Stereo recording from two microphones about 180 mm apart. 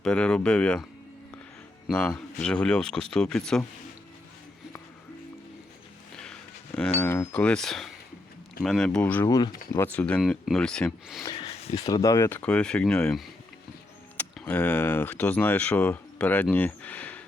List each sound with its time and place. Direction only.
0.0 s speech: 5° left (ahead or behind)
1.9 s speech: 5° left (ahead or behind)
6.1 s a sound: 5° left (ahead or behind)
7.0 s speech: 10° left (ahead or behind)
11.3 s a sound: 30° left (ahead or behind)
11.7 s speech: 20° left (ahead or behind)